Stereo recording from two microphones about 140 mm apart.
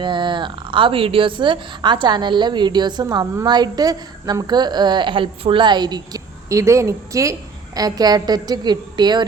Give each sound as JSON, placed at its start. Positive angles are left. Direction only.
{"t": 0.0, "sound": "a woman's voice", "side_deg": -35}